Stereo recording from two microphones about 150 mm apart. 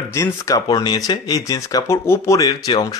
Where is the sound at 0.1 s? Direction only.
20° left (ahead or behind).